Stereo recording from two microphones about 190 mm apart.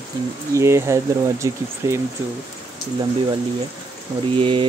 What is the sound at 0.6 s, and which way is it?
Speech, 15° right (ahead or behind).